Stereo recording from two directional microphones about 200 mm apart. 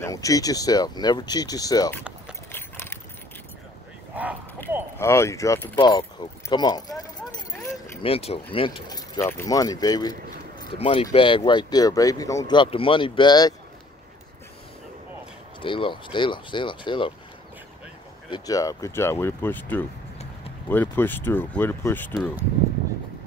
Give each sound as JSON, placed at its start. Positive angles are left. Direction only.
{"t": 0.0, "sound": "speech", "side_deg": 15}
{"t": 2.5, "sound": "keys jangling", "side_deg": 10}
{"t": 4.1, "sound": "a sound", "side_deg": -10}
{"t": 4.9, "sound": "speech", "side_deg": 15}
{"t": 8.0, "sound": "speech", "side_deg": 30}
{"t": 15.6, "sound": "speech", "side_deg": 25}
{"t": 18.3, "sound": "speech", "side_deg": 15}